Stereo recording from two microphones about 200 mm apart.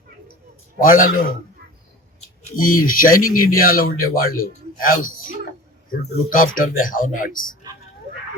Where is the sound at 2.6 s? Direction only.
45° left (ahead or behind).